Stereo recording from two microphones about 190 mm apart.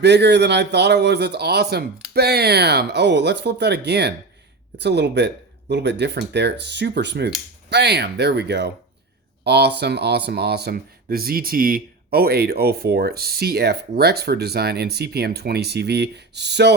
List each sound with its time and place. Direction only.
0.0 s speech: 65° right (ahead or behind)